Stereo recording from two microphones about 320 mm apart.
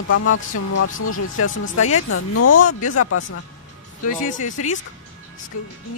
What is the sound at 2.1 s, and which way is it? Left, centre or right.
Speech, left.